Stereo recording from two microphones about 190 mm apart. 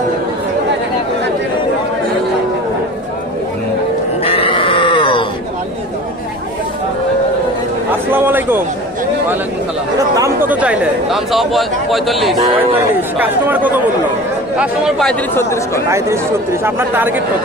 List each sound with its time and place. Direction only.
4.2 s grunt: 30° left (ahead or behind)
8.1 s a sound: 10° right (ahead or behind)
10.5 s speech: 5° right (ahead or behind)
15.3 s speech: 15° left (ahead or behind)
16.6 s speech: 10° right (ahead or behind)